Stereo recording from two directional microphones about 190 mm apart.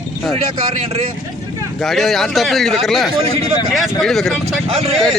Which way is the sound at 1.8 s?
Centre (ahead or behind).